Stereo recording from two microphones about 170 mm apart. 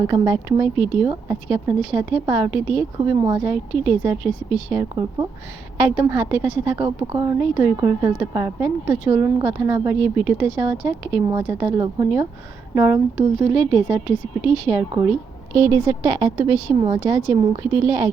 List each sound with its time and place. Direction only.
0.1 s a woman's voice: 20° right (ahead or behind)
14.4 s speech: 35° left (ahead or behind)
14.7 s a woman's voice: 10° right (ahead or behind)